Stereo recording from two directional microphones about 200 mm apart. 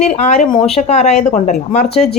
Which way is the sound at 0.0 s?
35° left (ahead or behind).